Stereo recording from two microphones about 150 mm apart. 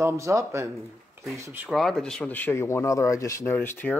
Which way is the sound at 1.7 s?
Centre (ahead or behind).